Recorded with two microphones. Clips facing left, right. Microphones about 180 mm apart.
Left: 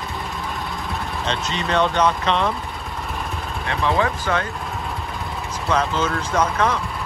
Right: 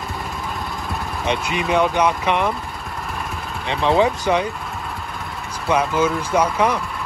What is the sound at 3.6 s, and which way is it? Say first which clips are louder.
Speech: right 4 dB; 20° right (ahead or behind).